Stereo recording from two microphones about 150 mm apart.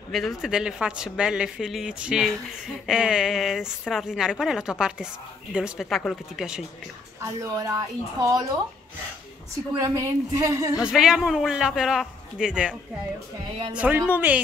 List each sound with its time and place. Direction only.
0.1 s speech: centre (ahead or behind)
7.2 s speech: 20° right (ahead or behind)
9.8 s speech: 20° right (ahead or behind)
10.8 s speech: 5° right (ahead or behind)
13.7 s a woman's voice: 10° right (ahead or behind)